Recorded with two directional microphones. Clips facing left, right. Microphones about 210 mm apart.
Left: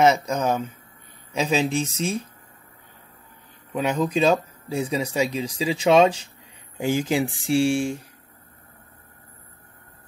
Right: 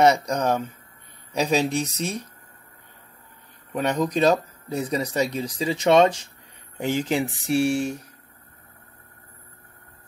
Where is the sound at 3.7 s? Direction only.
Centre (ahead or behind).